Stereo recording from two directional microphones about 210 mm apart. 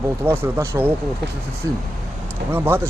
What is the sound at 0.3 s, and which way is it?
Speech, 10° right (ahead or behind).